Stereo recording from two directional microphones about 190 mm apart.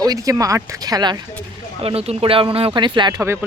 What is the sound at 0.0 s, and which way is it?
Speech, 20° right (ahead or behind).